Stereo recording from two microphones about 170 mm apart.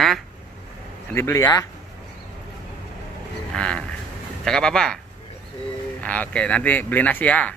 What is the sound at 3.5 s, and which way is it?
Speech, 5° left (ahead or behind).